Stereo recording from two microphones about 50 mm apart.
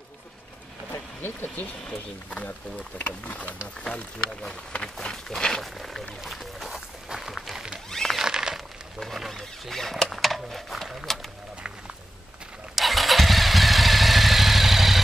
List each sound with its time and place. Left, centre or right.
1.2 s speech: left
1.9 s speech: left
3.8 s speech: centre
7.1 s a sound: centre
8.2 s a sound: centre
9.0 s speech: centre
12.7 s vehicle: centre